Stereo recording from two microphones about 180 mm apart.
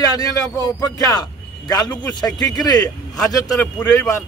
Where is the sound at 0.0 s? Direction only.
20° left (ahead or behind).